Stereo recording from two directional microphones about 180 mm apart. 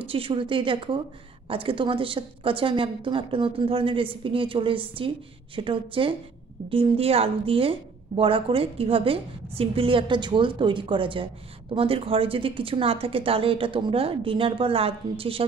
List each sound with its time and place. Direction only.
0.0 s a woman's voice: 30° right (ahead or behind)